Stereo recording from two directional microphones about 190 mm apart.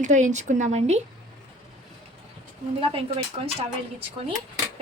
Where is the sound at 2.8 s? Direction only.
25° right (ahead or behind).